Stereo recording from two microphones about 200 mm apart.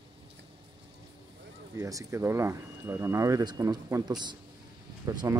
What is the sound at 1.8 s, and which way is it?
Speech, 15° right (ahead or behind).